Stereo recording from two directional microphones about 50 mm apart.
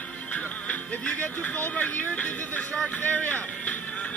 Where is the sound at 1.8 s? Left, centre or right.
Left.